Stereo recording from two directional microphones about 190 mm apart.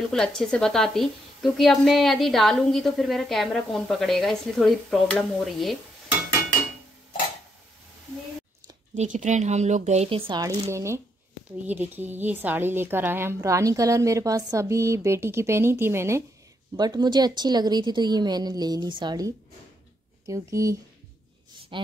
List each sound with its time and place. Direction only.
0.1 s a woman's voice: 5° left (ahead or behind)
8.9 s a woman's voice: 40° right (ahead or behind)